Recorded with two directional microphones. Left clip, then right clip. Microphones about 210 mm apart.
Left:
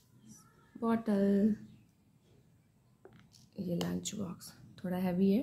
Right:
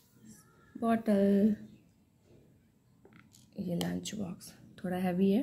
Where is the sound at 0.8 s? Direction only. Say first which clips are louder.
Right 3 dB; centre (ahead or behind).